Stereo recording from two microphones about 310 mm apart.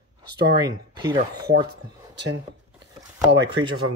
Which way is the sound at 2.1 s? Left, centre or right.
Right.